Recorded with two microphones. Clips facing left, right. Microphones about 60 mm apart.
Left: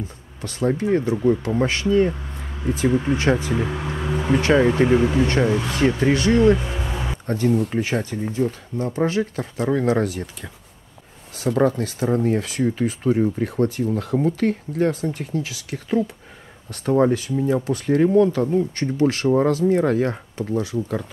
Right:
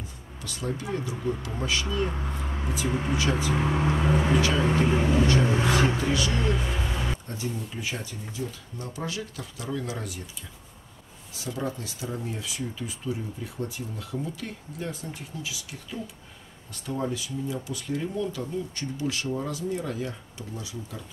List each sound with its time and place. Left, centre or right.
0.4 s speech: left
6.8 s a sound: centre
7.2 s speech: left